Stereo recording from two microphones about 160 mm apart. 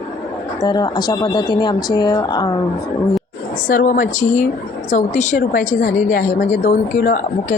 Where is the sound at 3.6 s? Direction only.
55° left (ahead or behind).